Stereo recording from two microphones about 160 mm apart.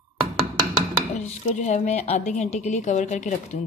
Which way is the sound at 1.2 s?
50° left (ahead or behind).